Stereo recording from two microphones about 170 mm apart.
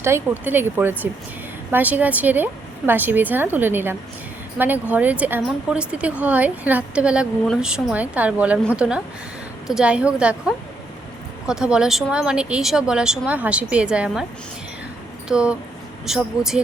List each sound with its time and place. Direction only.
0.0 s speech: 15° right (ahead or behind)
15.3 s speech: 5° right (ahead or behind)